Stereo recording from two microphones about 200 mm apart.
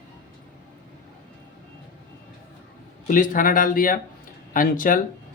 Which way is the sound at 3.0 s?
40° left (ahead or behind).